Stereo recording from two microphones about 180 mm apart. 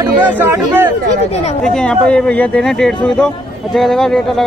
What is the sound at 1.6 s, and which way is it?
Speech, 5° left (ahead or behind).